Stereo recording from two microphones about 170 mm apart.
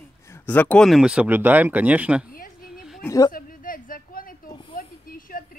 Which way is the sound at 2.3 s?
60° left (ahead or behind).